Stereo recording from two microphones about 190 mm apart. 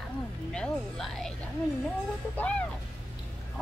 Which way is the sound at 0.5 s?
5° left (ahead or behind).